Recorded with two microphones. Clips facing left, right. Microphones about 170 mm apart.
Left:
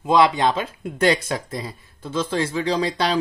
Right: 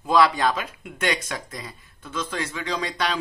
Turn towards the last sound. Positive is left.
turn(degrees=30)  # may be behind; listen again after turning